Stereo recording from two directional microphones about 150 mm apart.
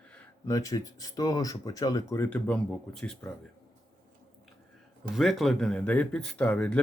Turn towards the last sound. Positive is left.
turn(degrees=5)  # may be behind; listen again after turning